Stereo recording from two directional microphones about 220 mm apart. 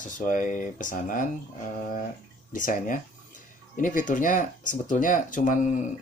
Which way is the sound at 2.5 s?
35° left (ahead or behind).